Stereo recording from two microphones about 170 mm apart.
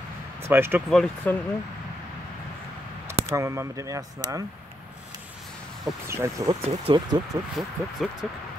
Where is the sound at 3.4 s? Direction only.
20° right (ahead or behind).